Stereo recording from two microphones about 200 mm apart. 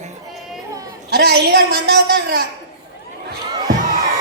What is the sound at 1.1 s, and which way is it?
A woman's voice, 55° right (ahead or behind).